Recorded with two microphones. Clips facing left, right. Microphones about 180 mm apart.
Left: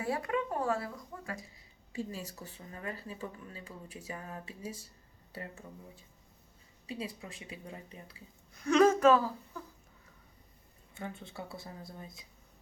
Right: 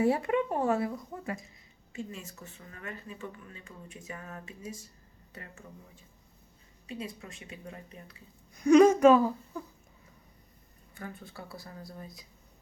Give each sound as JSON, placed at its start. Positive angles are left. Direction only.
{"t": 0.0, "sound": "speech", "side_deg": -25}
{"t": 1.9, "sound": "speech", "side_deg": 35}
{"t": 6.8, "sound": "speech", "side_deg": 30}
{"t": 8.6, "sound": "a woman's voice", "side_deg": -15}
{"t": 10.9, "sound": "speech", "side_deg": 25}